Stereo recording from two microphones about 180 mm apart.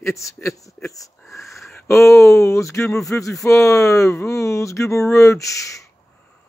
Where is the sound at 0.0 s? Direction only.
15° left (ahead or behind).